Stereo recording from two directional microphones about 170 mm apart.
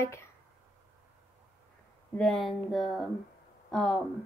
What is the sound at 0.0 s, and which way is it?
Speech, 15° left (ahead or behind).